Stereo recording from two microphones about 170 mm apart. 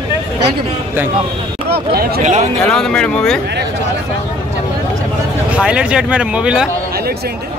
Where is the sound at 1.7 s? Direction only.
65° right (ahead or behind).